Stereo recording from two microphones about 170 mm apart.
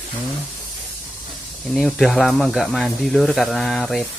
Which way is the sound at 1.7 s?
Centre (ahead or behind).